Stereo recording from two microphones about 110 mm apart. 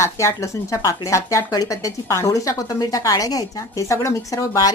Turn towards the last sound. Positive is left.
turn(degrees=30)  # may be behind; listen again after turning